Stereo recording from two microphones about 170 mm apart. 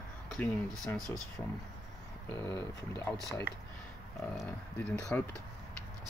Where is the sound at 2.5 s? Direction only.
15° left (ahead or behind).